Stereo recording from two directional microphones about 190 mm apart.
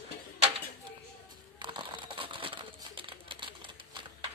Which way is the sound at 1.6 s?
25° right (ahead or behind).